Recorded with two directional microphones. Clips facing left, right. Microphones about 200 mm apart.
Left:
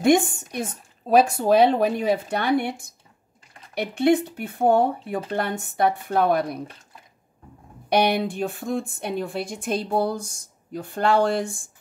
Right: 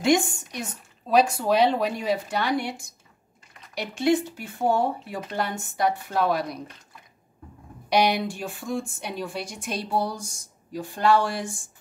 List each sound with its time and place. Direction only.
0.0 s a woman's voice: 55° left (ahead or behind)
7.9 s a woman's voice: 55° left (ahead or behind)